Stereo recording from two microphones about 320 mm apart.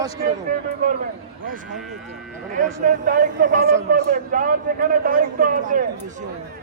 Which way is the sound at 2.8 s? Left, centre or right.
Right.